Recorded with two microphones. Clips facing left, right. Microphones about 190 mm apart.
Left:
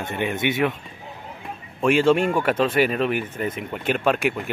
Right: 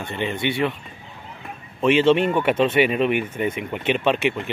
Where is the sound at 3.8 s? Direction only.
5° left (ahead or behind).